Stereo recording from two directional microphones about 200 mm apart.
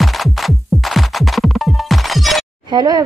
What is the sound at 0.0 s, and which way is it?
Music, centre (ahead or behind).